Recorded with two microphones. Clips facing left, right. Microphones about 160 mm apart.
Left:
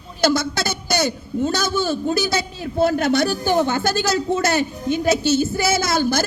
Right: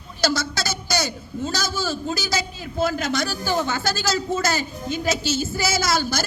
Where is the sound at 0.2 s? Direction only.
55° left (ahead or behind).